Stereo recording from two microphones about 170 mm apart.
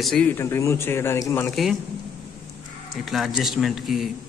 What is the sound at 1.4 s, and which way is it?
Speech, centre (ahead or behind).